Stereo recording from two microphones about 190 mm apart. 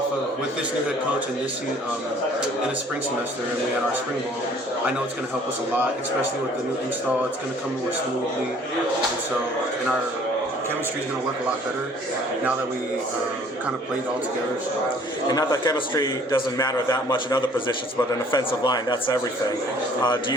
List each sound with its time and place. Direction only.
15.3 s a man's voice: 20° left (ahead or behind)